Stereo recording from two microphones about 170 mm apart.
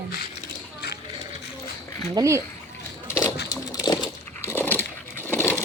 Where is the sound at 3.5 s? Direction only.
20° left (ahead or behind).